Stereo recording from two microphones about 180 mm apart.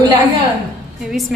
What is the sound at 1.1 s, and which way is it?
Speech, centre (ahead or behind).